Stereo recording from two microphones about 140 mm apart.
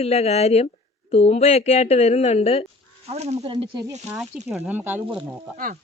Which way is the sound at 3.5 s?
35° right (ahead or behind).